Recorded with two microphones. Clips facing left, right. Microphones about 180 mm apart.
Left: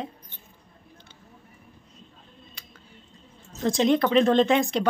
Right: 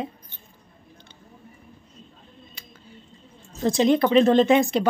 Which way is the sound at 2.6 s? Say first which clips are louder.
Right 3 dB; 5° right (ahead or behind).